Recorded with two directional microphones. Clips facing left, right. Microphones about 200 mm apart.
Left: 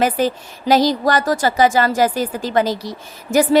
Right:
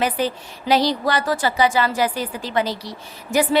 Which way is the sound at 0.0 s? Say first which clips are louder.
Left 4 dB; 45° left (ahead or behind).